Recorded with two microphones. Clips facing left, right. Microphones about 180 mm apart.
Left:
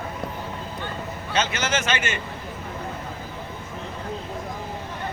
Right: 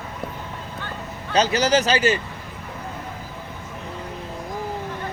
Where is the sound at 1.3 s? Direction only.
35° right (ahead or behind).